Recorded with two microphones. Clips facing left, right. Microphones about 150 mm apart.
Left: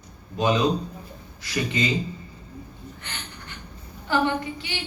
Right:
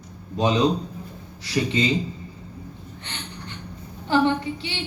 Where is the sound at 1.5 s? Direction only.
30° right (ahead or behind).